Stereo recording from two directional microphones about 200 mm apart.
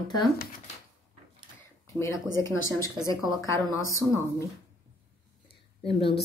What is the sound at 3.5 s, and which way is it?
Speech, 15° left (ahead or behind).